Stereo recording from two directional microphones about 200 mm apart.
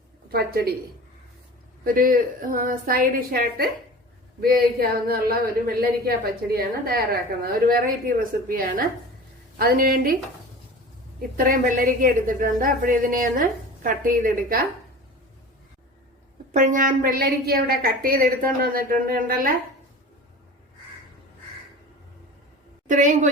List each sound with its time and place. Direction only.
0.3 s a woman's voice: 50° right (ahead or behind)
1.8 s a woman's voice: 45° right (ahead or behind)
11.2 s a woman's voice: 45° right (ahead or behind)
16.5 s a woman's voice: 40° right (ahead or behind)
22.9 s a woman's voice: 40° right (ahead or behind)